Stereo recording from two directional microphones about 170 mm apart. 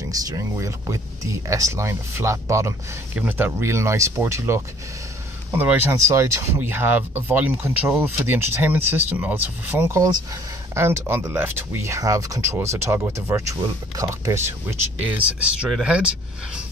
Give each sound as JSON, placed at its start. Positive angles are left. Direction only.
{"t": 0.1, "sound": "speech", "side_deg": -20}